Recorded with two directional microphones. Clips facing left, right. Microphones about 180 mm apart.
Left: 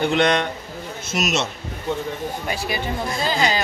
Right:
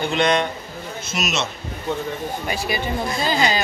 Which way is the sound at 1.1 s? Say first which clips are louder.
Left 3 dB; 50° left (ahead or behind).